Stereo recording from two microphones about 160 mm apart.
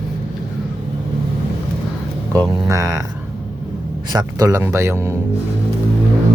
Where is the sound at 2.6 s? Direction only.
20° right (ahead or behind).